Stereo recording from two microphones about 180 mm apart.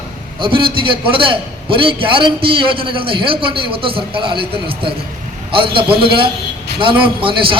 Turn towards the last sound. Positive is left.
turn(degrees=-30)  # may be behind; listen again after turning